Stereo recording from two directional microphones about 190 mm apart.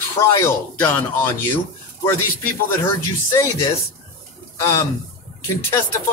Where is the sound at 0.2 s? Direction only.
15° left (ahead or behind).